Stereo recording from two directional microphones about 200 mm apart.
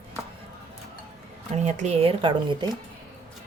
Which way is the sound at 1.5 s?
35° right (ahead or behind).